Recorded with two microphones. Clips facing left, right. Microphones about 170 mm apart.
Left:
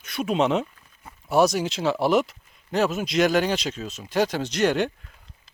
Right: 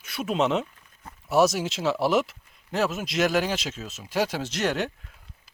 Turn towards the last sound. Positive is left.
turn(degrees=-5)  # may be behind; listen again after turning